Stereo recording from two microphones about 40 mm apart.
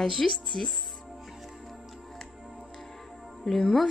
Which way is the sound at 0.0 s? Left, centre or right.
Centre.